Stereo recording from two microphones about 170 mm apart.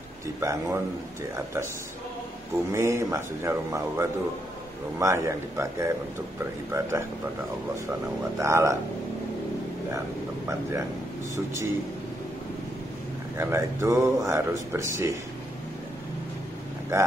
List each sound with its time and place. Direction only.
0.4 s speech: 15° right (ahead or behind)
2.7 s speech: 15° right (ahead or behind)
8.2 s speech: 15° right (ahead or behind)
11.3 s speech: 15° right (ahead or behind)
13.4 s speech: 15° right (ahead or behind)